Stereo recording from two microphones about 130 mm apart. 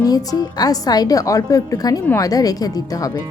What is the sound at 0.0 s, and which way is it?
Speech, 30° left (ahead or behind).